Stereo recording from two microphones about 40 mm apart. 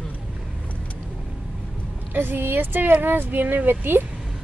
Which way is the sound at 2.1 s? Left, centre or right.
Right.